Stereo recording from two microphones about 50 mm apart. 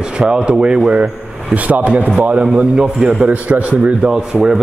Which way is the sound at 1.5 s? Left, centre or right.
Right.